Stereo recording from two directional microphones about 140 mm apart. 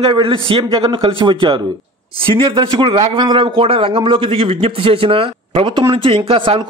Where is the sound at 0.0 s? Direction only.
35° right (ahead or behind).